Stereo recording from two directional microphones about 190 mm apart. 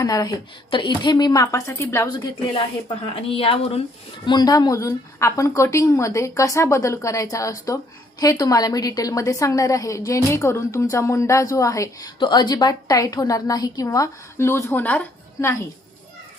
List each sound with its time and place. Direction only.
0.0 s a woman's voice: 20° left (ahead or behind)